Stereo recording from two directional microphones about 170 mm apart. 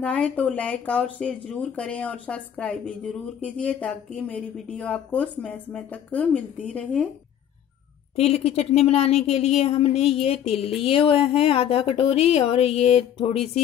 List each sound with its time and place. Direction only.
0.0 s speech: 5° left (ahead or behind)
8.2 s speech: 40° left (ahead or behind)